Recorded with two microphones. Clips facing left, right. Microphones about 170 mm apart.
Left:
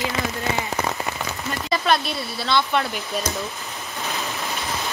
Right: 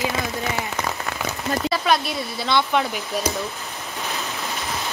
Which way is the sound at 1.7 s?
10° right (ahead or behind).